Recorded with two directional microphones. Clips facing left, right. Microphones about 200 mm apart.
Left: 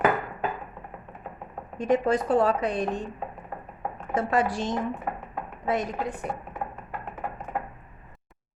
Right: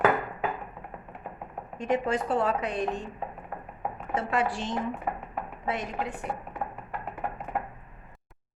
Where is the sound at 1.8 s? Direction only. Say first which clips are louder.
Left 4 dB; 40° left (ahead or behind).